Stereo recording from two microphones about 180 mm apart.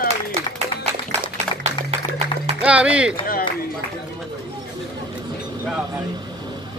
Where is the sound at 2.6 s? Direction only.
5° right (ahead or behind).